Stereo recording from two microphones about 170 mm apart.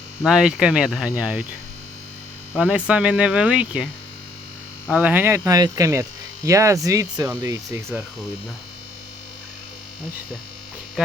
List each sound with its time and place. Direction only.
0.3 s speech: 5° right (ahead or behind)
2.6 s speech: 5° right (ahead or behind)
4.9 s speech: 5° right (ahead or behind)